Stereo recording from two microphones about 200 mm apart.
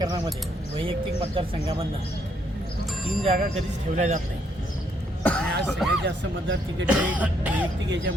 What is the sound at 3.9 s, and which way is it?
Speech, 35° right (ahead or behind).